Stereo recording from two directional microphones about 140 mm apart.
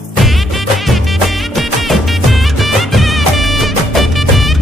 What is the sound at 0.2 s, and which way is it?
Music, centre (ahead or behind).